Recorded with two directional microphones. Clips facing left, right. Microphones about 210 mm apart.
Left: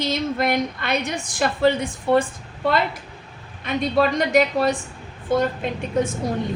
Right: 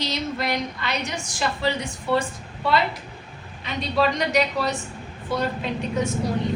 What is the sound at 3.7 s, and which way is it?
Speech, 55° left (ahead or behind).